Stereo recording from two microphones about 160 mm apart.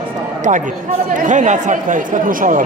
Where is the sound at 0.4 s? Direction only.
50° right (ahead or behind).